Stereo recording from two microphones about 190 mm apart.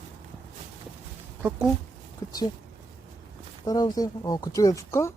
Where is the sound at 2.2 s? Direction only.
15° left (ahead or behind).